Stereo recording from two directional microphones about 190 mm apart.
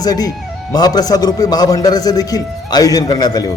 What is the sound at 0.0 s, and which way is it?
A man's voice, 20° left (ahead or behind).